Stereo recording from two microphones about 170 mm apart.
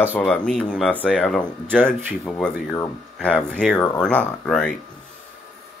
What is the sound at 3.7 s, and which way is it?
Speech, 20° left (ahead or behind).